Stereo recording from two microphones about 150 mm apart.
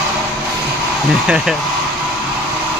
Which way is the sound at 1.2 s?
5° right (ahead or behind).